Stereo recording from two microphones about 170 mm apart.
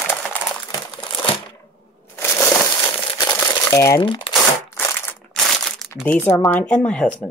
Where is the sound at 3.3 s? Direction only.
20° left (ahead or behind).